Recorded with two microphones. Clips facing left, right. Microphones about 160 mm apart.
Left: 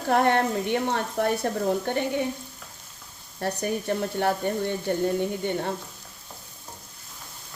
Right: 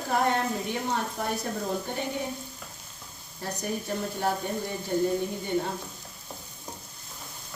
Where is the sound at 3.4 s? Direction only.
70° left (ahead or behind).